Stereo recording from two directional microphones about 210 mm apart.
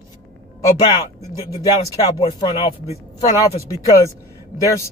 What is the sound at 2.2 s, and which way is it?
Speech, 25° left (ahead or behind).